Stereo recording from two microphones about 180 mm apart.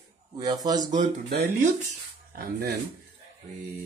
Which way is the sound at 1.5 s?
50° right (ahead or behind).